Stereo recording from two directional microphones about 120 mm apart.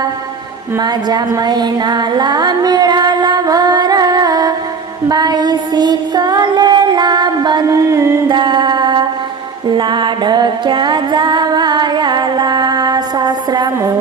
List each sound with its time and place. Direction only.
0.8 s a sound: 35° right (ahead or behind)
5.0 s child singing: 35° right (ahead or behind)
7.9 s music: 25° right (ahead or behind)
8.3 s music: 40° right (ahead or behind)